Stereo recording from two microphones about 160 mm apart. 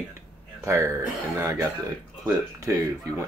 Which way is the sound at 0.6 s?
15° right (ahead or behind).